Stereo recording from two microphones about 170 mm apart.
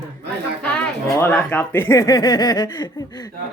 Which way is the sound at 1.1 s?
10° left (ahead or behind).